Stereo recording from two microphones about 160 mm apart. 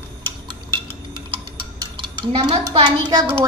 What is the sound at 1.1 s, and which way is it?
Dishes, 30° right (ahead or behind).